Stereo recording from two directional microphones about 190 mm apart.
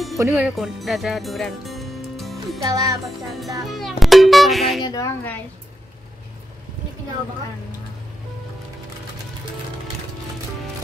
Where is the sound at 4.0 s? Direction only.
Centre (ahead or behind).